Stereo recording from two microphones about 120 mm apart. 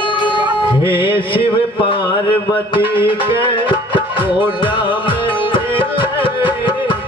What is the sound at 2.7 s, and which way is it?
Music, 45° left (ahead or behind).